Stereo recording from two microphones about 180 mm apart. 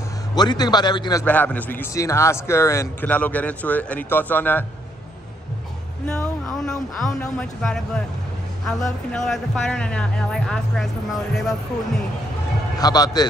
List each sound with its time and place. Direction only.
0.3 s a man's voice: 20° left (ahead or behind)
1.2 s a man's voice: 10° left (ahead or behind)
6.0 s speech: 5° left (ahead or behind)
12.7 s a man's voice: 20° left (ahead or behind)